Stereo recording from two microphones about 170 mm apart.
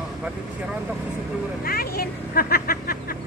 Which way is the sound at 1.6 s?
65° left (ahead or behind).